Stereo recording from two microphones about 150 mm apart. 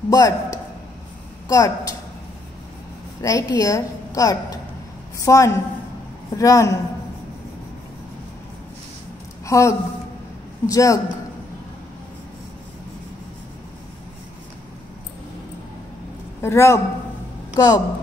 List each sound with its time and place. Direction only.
0.1 s a woman's voice: 25° left (ahead or behind)
3.2 s a woman's voice: 25° left (ahead or behind)
9.5 s a woman's voice: 20° left (ahead or behind)
16.3 s a man's voice: 20° left (ahead or behind)